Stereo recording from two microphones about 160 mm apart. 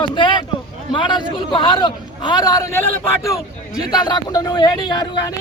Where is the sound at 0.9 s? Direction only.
30° left (ahead or behind).